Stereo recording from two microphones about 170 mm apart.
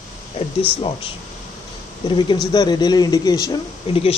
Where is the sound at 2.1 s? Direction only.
30° left (ahead or behind).